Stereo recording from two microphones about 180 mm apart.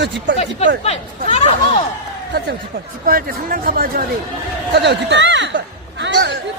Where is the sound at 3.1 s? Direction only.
55° right (ahead or behind).